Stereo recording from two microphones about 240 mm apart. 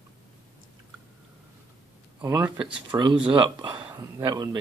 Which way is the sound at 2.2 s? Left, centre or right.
Centre.